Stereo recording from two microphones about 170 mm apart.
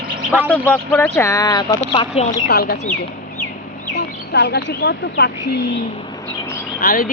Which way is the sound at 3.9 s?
85° left.